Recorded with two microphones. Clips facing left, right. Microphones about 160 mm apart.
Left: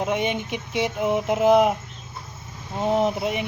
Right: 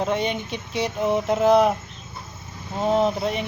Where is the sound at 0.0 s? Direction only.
15° left (ahead or behind).